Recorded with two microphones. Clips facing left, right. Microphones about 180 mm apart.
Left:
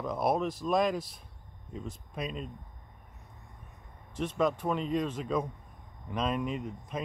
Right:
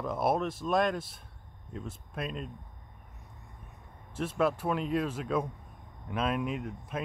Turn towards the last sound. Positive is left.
turn(degrees=-5)  # may be behind; listen again after turning